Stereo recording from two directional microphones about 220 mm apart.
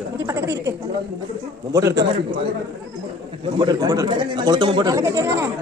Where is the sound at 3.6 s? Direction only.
15° right (ahead or behind).